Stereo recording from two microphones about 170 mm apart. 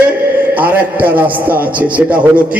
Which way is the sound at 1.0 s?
10° right (ahead or behind).